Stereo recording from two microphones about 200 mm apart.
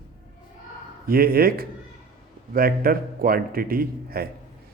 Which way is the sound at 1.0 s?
50° right (ahead or behind).